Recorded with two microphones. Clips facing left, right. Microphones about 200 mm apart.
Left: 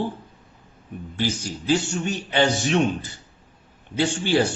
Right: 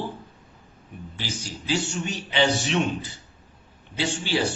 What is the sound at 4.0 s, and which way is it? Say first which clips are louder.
Speech: left 5 dB; 50° left (ahead or behind).